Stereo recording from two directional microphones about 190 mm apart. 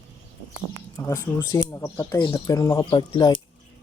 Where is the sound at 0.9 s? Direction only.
15° left (ahead or behind).